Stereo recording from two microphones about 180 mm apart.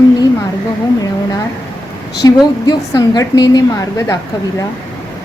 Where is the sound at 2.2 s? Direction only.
20° left (ahead or behind).